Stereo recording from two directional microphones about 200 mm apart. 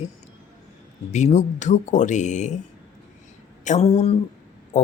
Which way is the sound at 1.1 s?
35° left (ahead or behind).